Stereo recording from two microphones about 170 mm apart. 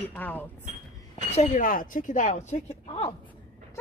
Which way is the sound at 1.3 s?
50° left (ahead or behind).